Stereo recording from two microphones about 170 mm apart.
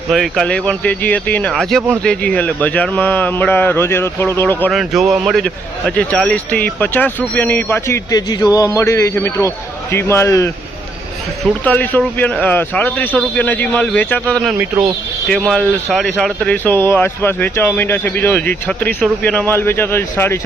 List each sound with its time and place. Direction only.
0.1 s speech: centre (ahead or behind)
4.7 s speech: centre (ahead or behind); by 10.5 s 15° left (ahead or behind)
11.6 s speech: 10° left (ahead or behind)